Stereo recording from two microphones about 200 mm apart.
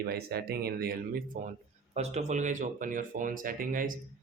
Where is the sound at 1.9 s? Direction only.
35° right (ahead or behind).